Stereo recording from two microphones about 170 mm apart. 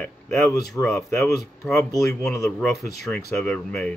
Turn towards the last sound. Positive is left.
turn(degrees=5)  # may be behind; listen again after turning